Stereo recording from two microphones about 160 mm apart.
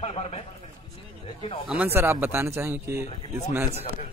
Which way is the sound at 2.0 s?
15° right (ahead or behind).